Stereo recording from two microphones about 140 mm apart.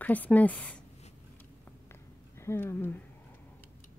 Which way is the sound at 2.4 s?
20° left (ahead or behind).